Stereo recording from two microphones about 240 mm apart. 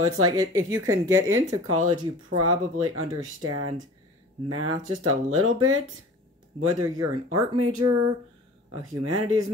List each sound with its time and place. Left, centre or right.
0.2 s speech: right
0.6 s a woman's voice: centre
1.0 s speech: right